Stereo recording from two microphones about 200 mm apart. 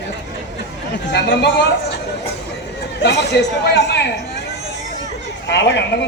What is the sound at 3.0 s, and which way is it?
Speech, 60° left (ahead or behind).